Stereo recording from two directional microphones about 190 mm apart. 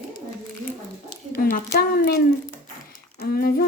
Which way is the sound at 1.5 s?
55° left (ahead or behind).